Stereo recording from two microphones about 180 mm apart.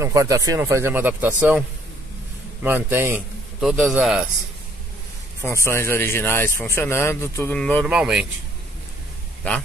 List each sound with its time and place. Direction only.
0.0 s speech: 15° right (ahead or behind)
2.6 s speech: 15° right (ahead or behind)
5.4 s a man's voice: 15° left (ahead or behind)
7.8 s speech: 5° right (ahead or behind)
9.4 s a man's voice: 10° left (ahead or behind)